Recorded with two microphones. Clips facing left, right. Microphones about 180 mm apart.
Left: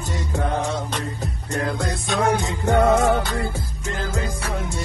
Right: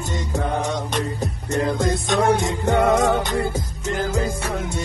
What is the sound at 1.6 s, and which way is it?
Music, centre (ahead or behind).